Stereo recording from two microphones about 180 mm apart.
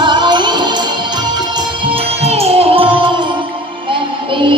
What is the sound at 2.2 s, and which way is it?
Music, 35° right (ahead or behind).